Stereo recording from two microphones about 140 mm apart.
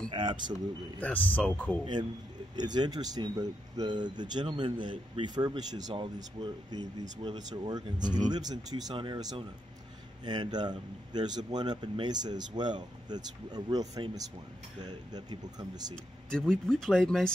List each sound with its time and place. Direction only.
0.1 s speech: 35° right (ahead or behind)
0.9 s a man's voice: 10° left (ahead or behind)
2.5 s speech: 30° right (ahead or behind)
16.3 s speech: 5° left (ahead or behind)